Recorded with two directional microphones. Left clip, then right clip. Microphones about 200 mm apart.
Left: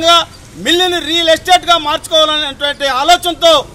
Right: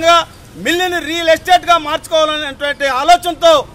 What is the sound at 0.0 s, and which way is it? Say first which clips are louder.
A man's voice: left 1 dB; 15° right (ahead or behind).